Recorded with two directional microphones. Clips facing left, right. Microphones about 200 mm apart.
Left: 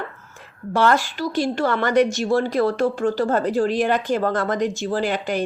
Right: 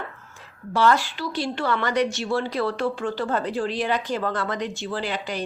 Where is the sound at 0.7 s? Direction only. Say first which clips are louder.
Left 2 dB; 50° left (ahead or behind).